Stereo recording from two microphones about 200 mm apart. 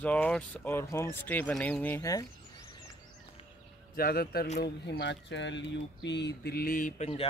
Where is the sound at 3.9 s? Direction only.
50° left (ahead or behind).